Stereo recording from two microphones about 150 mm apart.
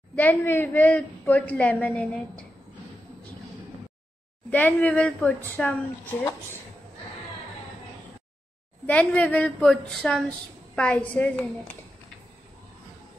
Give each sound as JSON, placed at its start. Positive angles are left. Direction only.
{"t": 0.1, "sound": "a woman's voice", "side_deg": 10}
{"t": 4.5, "sound": "a woman's voice", "side_deg": 10}
{"t": 8.8, "sound": "a woman's voice", "side_deg": 10}